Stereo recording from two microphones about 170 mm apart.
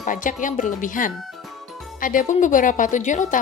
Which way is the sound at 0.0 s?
50° left (ahead or behind).